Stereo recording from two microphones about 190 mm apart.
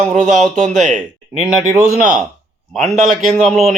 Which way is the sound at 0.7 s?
40° right (ahead or behind).